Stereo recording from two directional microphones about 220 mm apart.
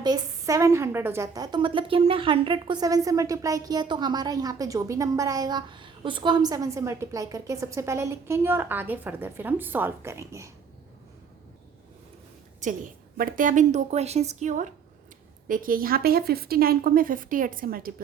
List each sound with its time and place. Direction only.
0.0 s a woman's voice: 15° right (ahead or behind)
12.5 s speech: 35° right (ahead or behind)